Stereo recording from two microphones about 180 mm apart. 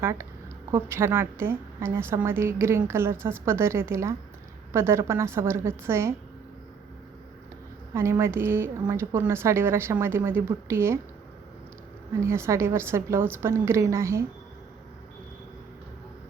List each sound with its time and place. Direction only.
0.0 s a woman's voice: 15° right (ahead or behind)
7.9 s a woman's voice: 15° right (ahead or behind)
12.2 s a woman's voice: 15° right (ahead or behind)